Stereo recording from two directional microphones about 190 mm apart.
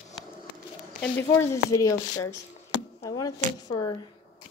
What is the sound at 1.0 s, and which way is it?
Speech, 10° left (ahead or behind).